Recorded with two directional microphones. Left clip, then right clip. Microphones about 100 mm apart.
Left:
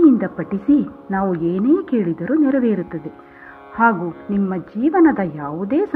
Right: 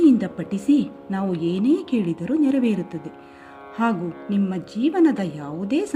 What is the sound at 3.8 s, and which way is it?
A woman's voice, 20° right (ahead or behind).